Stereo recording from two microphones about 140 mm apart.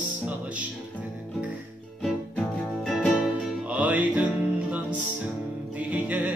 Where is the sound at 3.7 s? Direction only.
10° right (ahead or behind).